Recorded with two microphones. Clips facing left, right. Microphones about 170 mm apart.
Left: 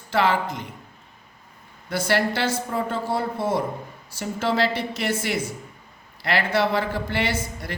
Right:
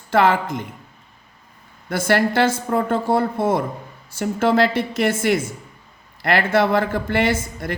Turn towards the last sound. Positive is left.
turn(degrees=-50)  # may be behind; listen again after turning